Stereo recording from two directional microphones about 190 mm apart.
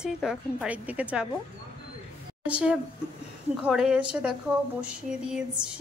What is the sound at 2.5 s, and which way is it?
A woman's voice, 5° right (ahead or behind).